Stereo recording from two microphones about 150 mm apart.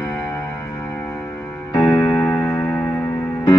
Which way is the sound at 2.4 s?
10° left (ahead or behind).